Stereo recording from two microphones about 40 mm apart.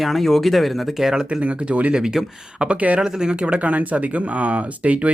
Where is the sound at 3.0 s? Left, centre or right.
Right.